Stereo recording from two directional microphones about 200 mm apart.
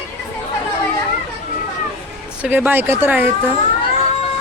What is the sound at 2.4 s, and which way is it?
Speech, 10° right (ahead or behind).